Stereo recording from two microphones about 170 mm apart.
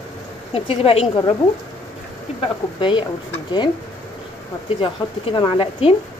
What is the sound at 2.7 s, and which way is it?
Speech, 30° left (ahead or behind).